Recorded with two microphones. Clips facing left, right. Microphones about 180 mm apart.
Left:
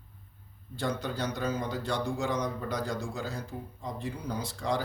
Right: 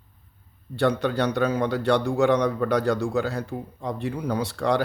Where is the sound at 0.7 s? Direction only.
70° right (ahead or behind).